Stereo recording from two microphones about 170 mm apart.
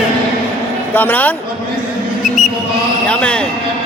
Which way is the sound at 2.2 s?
5° right (ahead or behind).